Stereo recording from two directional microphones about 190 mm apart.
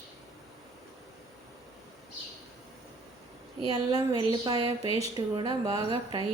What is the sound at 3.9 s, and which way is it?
Speech, 20° right (ahead or behind).